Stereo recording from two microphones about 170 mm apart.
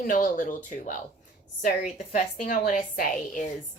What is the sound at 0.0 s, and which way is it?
A woman's voice, 50° left (ahead or behind).